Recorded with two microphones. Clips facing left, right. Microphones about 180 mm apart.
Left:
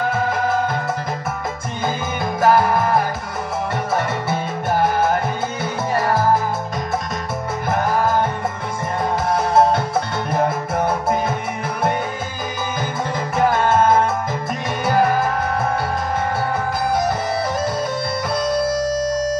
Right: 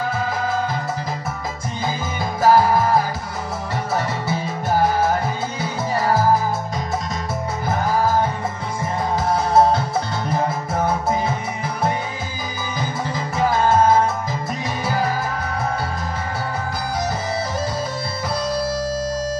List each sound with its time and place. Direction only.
2.4 s music: 55° left (ahead or behind)
5.6 s music: 55° left (ahead or behind)
10.9 s music: 55° left (ahead or behind)
13.4 s music: 55° left (ahead or behind)